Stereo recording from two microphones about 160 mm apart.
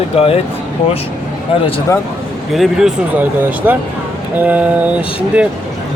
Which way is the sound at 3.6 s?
15° right (ahead or behind).